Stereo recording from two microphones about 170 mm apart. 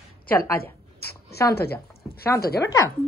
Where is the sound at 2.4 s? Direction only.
65° left (ahead or behind).